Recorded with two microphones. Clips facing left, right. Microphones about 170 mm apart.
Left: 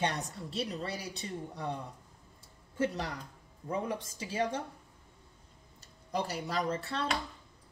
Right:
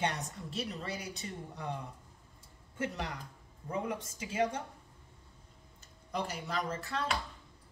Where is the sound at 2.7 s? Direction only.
35° left (ahead or behind).